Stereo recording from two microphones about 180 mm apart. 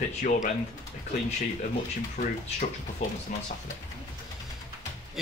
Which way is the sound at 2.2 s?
45° left (ahead or behind).